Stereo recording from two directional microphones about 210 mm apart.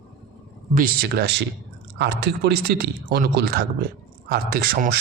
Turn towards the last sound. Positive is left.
turn(degrees=-45)  # may be behind; listen again after turning